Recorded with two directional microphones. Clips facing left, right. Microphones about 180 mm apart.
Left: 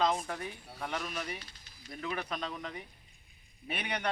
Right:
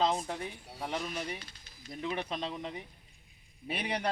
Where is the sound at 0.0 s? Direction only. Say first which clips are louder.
Even; 25° right (ahead or behind).